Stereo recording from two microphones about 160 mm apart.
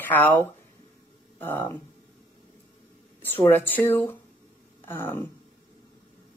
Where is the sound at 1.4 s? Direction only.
15° left (ahead or behind).